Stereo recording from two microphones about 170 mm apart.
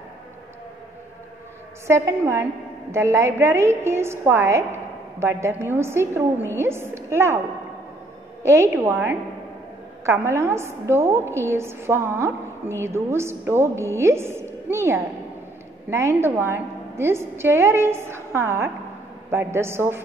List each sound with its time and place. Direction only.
1.9 s a woman's voice: 15° right (ahead or behind)
8.5 s a woman's voice: 15° right (ahead or behind)
10.0 s a woman's voice: 15° right (ahead or behind)